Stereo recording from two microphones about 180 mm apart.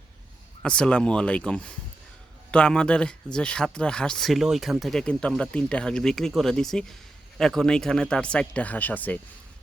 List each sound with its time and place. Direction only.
0.6 s speech: 5° left (ahead or behind)